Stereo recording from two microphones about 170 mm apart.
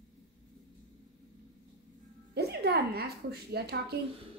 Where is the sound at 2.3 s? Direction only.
70° right (ahead or behind).